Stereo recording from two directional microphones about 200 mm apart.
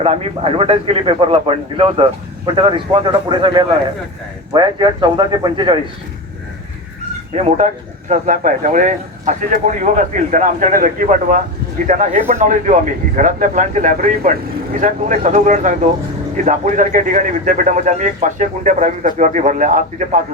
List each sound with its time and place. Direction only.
0.0 s a man's voice: 30° right (ahead or behind)
7.3 s a man's voice: 35° right (ahead or behind)